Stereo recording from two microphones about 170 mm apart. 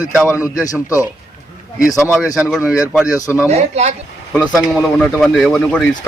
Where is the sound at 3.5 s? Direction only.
40° right (ahead or behind).